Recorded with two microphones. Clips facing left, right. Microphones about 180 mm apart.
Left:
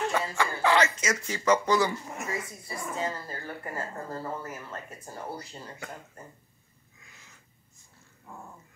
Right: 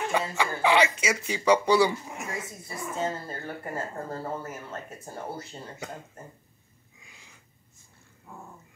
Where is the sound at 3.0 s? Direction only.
25° right (ahead or behind).